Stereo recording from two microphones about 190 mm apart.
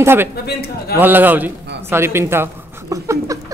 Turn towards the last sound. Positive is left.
turn(degrees=-15)  # may be behind; listen again after turning